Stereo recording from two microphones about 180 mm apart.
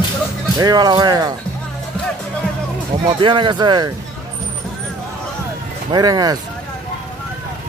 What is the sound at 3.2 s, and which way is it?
Speech, 25° right (ahead or behind).